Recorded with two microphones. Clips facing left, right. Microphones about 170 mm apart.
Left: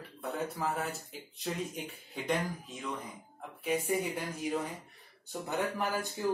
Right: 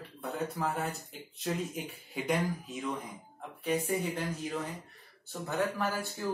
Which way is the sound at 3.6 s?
10° left (ahead or behind).